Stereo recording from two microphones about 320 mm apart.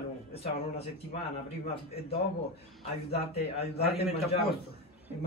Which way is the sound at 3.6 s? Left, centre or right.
Left.